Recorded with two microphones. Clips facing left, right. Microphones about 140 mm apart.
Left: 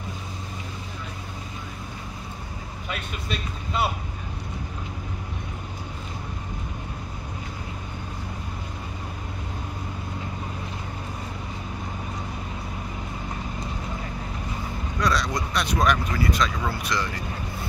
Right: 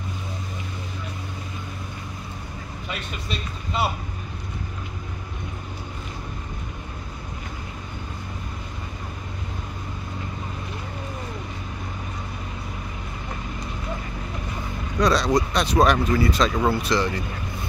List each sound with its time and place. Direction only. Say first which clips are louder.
2.9 s speech: even; centre (ahead or behind)
15.0 s speech: right 6 dB; 25° right (ahead or behind)